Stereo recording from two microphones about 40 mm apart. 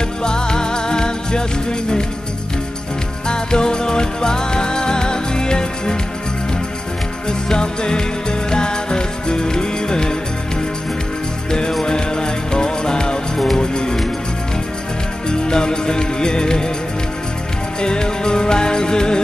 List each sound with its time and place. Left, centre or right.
0.2 s music: centre
3.3 s music: centre
7.2 s music: left
11.8 s music: centre
15.2 s music: centre
17.7 s music: left